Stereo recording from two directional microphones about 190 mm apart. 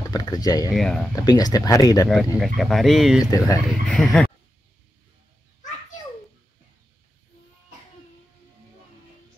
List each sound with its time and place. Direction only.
0.1 s speech: 20° left (ahead or behind)
0.7 s speech: 5° left (ahead or behind)
1.1 s speech: 20° left (ahead or behind)
2.4 s speech: centre (ahead or behind)
3.3 s speech: 20° left (ahead or behind)
3.8 s speech: centre (ahead or behind)